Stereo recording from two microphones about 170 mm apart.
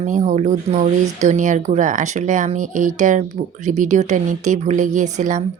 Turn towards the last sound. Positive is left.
turn(degrees=-45)  # may be behind; listen again after turning